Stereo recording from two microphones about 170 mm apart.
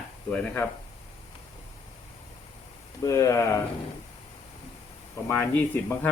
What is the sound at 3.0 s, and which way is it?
Speech, 15° left (ahead or behind).